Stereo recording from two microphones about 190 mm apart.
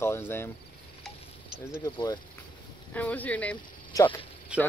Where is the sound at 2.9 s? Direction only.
10° left (ahead or behind).